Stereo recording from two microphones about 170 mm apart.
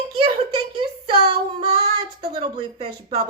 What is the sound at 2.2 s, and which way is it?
A woman's voice, 30° right (ahead or behind).